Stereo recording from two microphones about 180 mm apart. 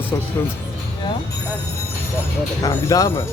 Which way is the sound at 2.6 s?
20° left (ahead or behind).